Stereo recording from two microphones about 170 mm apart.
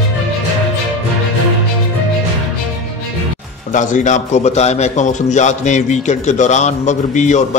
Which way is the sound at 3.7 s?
50° left (ahead or behind).